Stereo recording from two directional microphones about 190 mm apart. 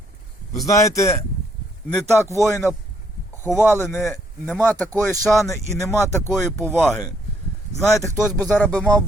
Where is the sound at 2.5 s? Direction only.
15° left (ahead or behind).